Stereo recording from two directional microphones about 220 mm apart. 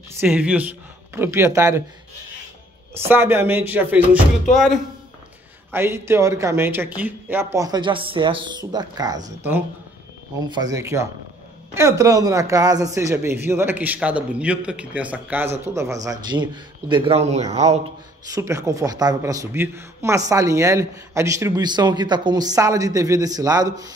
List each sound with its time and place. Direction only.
0.2 s a man's voice: 5° right (ahead or behind)
3.1 s a man's voice: 10° right (ahead or behind); by 17.7 s 30° right (ahead or behind)
18.3 s a man's voice: 15° right (ahead or behind)